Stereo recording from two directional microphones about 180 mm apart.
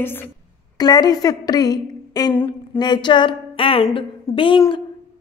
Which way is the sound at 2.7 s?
25° left (ahead or behind).